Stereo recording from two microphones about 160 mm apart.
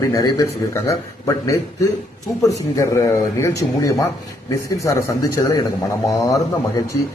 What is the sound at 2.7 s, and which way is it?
A man's voice, 20° left (ahead or behind).